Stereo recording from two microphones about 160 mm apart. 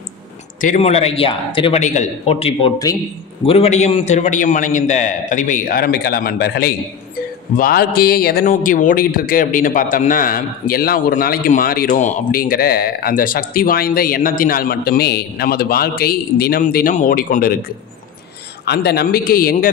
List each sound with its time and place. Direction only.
0.6 s speech: 50° left (ahead or behind); by 1.8 s 35° left (ahead or behind)
1.8 s a man's voice: 45° left (ahead or behind); by 6.7 s 80° left
7.5 s speech: 65° left (ahead or behind)
18.7 s speech: 85° left; by 19.7 s 65° left (ahead or behind)